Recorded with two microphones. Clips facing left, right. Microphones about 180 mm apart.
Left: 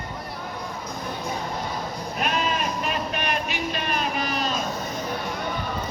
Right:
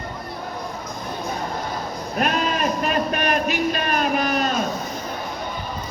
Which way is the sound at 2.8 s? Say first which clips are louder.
Right 5 dB; 45° right (ahead or behind).